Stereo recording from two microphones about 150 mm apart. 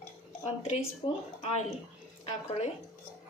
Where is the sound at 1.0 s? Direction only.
40° left (ahead or behind).